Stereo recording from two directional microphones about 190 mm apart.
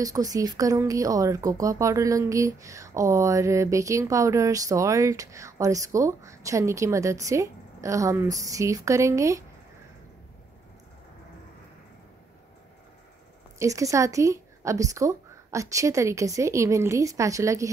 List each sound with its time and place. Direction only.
0.0 s speech: 20° right (ahead or behind)
13.6 s speech: 15° right (ahead or behind)